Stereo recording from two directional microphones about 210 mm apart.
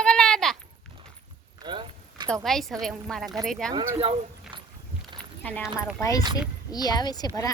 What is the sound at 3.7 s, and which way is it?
Speech, 20° right (ahead or behind).